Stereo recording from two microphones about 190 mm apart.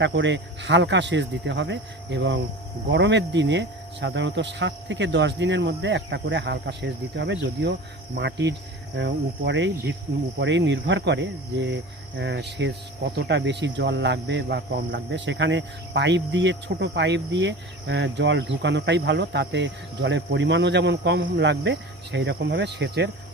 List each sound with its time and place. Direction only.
0.0 s speech: 70° right (ahead or behind)